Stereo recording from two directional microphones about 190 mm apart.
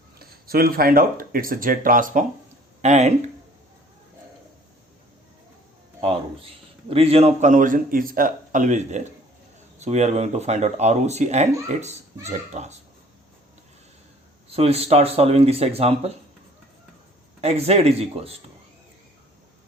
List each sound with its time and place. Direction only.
0.2 s speech: 55° right (ahead or behind); by 3.1 s 35° right (ahead or behind)
6.0 s a sound: 30° right (ahead or behind)
6.9 s speech: 30° right (ahead or behind)
14.5 s speech: 30° right (ahead or behind)
17.4 s speech: 35° right (ahead or behind)